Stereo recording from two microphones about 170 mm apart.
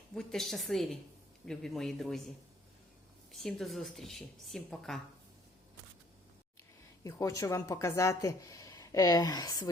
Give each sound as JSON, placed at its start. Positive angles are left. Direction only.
{"t": 0.1, "sound": "a woman's voice", "side_deg": 5}
{"t": 3.3, "sound": "a woman's voice", "side_deg": 0}
{"t": 7.0, "sound": "speech", "side_deg": 20}